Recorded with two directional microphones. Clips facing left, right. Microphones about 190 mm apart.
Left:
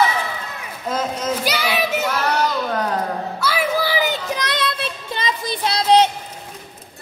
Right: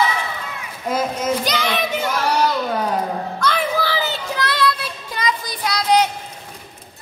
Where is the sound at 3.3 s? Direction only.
5° left (ahead or behind); by 6.0 s 25° left (ahead or behind).